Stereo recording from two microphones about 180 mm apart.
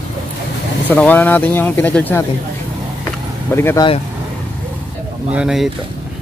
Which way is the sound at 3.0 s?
15° left (ahead or behind).